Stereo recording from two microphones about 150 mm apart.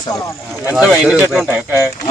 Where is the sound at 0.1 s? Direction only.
20° left (ahead or behind).